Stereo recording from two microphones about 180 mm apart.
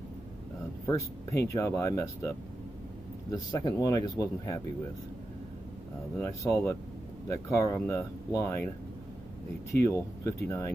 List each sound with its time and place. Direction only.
0.8 s speech: 15° left (ahead or behind)
6.1 s speech: 15° left (ahead or behind)
9.8 s speech: 15° left (ahead or behind)